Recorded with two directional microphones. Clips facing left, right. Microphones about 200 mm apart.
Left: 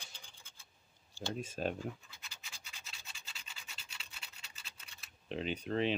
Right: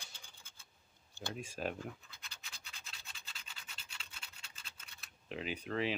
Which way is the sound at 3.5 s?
5° left (ahead or behind).